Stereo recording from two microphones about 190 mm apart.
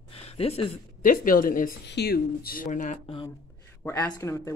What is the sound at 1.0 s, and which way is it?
Speech, 45° left (ahead or behind).